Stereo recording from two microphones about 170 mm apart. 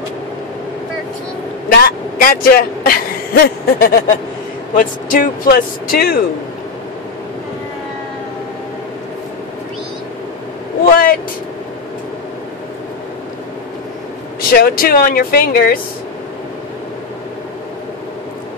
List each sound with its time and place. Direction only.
1.7 s speech: 55° left (ahead or behind)
10.9 s speech: 60° left (ahead or behind)
14.5 s speech: 60° left (ahead or behind)